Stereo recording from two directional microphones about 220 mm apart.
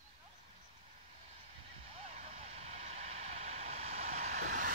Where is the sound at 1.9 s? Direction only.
30° right (ahead or behind).